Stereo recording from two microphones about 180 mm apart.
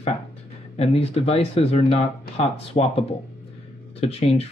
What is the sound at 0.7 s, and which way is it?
Speech, 35° left (ahead or behind).